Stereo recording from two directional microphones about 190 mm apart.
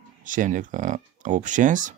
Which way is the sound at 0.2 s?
45° right (ahead or behind).